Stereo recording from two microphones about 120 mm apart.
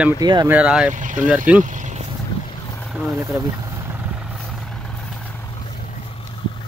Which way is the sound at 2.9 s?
5° right (ahead or behind).